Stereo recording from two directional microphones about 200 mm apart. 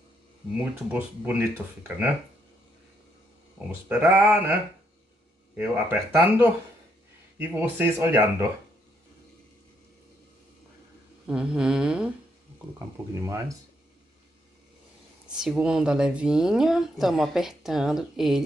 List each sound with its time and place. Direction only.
0.6 s speech: 5° right (ahead or behind)
3.6 s speech: centre (ahead or behind)
4.0 s speech: 15° right (ahead or behind)
5.6 s speech: 10° right (ahead or behind)
11.2 s speech: 5° right (ahead or behind)
12.7 s speech: 15° right (ahead or behind)
15.4 s speech: 5° right (ahead or behind)